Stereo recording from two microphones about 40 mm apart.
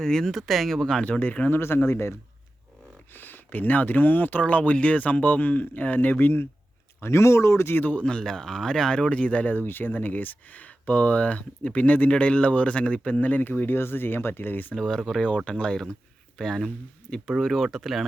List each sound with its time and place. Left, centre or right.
0.0 s speech: centre
0.3 s speech: centre
1.2 s speech: left
1.5 s speech: left
3.1 s speech: left
7.0 s speech: left
7.8 s speech: left
8.0 s speech: centre; by 9.6 s left
9.6 s speech: left
14.8 s speech: centre
15.5 s speech: left
16.4 s speech: centre
17.4 s speech: centre